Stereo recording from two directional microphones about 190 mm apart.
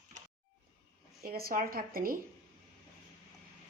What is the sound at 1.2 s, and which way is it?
Speech, 50° right (ahead or behind).